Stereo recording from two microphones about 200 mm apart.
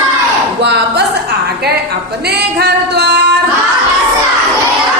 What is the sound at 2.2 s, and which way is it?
Music, 55° right (ahead or behind).